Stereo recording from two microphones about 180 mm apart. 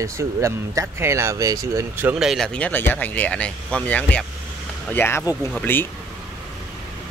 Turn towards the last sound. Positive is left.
turn(degrees=10)  # may be behind; listen again after turning